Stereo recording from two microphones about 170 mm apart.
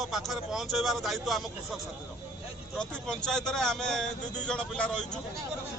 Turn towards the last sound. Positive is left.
turn(degrees=5)  # may be behind; listen again after turning